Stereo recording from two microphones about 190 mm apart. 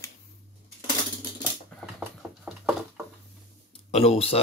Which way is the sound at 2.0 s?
Centre (ahead or behind).